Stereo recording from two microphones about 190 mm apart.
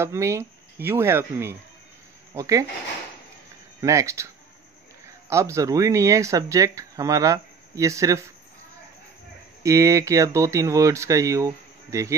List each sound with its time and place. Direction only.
0.0 s speech: 15° right (ahead or behind)
3.8 s speech: 15° right (ahead or behind)
9.6 s speech: 15° right (ahead or behind)